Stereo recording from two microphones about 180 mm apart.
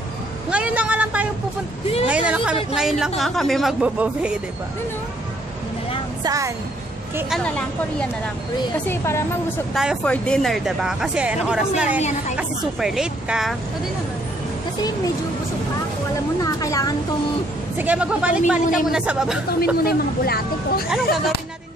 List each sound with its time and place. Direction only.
0.5 s a sound: 5° right (ahead or behind)
2.0 s a woman's voice: 5° right (ahead or behind)
6.2 s a woman's voice: 20° right (ahead or behind)
7.2 s speech: 5° left (ahead or behind)
8.8 s a woman's voice: 15° left (ahead or behind)
9.8 s speech: centre (ahead or behind)
16.3 s a woman's voice: 20° left (ahead or behind)
17.7 s a woman's voice: 5° right (ahead or behind)
19.6 s speech: 55° left (ahead or behind)